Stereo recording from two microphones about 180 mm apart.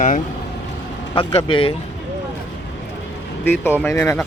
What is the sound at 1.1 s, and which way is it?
Speech, 30° left (ahead or behind).